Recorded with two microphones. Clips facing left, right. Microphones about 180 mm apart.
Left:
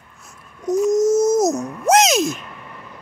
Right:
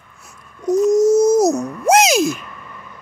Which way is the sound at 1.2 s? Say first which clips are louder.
Right 3 dB; 35° right (ahead or behind).